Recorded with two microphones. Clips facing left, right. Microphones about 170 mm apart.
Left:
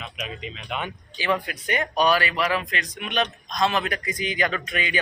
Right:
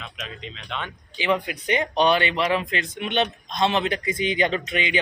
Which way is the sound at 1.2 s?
20° right (ahead or behind).